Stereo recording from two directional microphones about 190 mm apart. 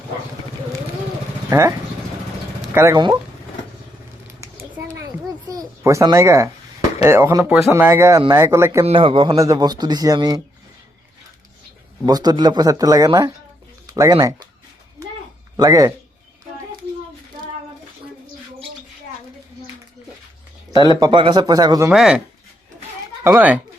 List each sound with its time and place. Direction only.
1.5 s speech: 15° right (ahead or behind)
4.3 s a sound: 15° right (ahead or behind)
7.0 s speech: 15° right (ahead or behind)
8.8 s a man's voice: 30° right (ahead or behind)
12.0 s a man's voice: 20° right (ahead or behind)
15.5 s speech: 20° right (ahead or behind)
20.7 s a man's voice: 25° right (ahead or behind)
21.8 s speech: 5° right (ahead or behind)
23.2 s speech: 10° right (ahead or behind)